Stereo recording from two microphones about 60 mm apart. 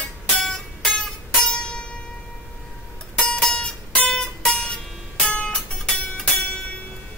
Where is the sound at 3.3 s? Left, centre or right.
Centre.